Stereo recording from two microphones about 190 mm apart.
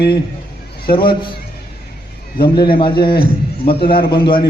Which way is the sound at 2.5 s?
25° left (ahead or behind).